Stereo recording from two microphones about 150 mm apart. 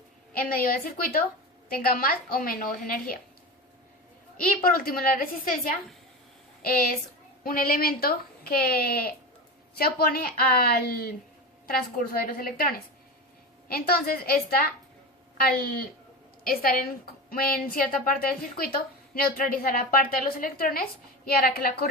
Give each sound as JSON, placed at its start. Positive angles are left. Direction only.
{"t": 0.3, "sound": "a woman's voice", "side_deg": 70}
{"t": 4.6, "sound": "a woman's voice", "side_deg": 75}
{"t": 6.6, "sound": "a woman's voice", "side_deg": 80}
{"t": 13.7, "sound": "a woman's voice", "side_deg": 90}
{"t": 15.4, "sound": "a woman's voice", "side_deg": 90}
{"t": 21.2, "sound": "a woman's voice", "side_deg": 90}